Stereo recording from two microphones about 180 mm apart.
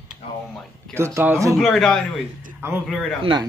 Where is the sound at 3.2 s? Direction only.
25° right (ahead or behind).